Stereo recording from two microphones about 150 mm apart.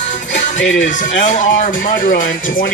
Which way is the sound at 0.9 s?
60° left (ahead or behind).